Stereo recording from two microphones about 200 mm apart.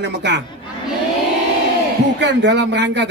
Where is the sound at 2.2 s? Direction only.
60° right (ahead or behind).